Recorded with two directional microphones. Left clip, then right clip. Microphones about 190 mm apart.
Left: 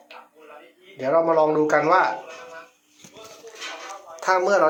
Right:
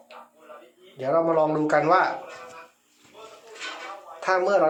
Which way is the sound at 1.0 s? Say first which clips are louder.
Left 3 dB; 5° left (ahead or behind).